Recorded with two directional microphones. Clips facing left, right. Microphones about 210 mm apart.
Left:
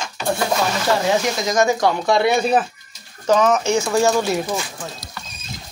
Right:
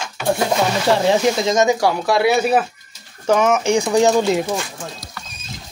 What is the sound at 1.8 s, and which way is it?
Speech, 5° right (ahead or behind).